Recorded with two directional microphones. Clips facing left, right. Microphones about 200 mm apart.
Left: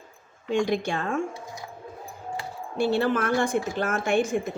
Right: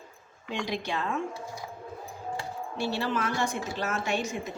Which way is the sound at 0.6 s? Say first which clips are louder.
Left 3 dB; 50° left (ahead or behind).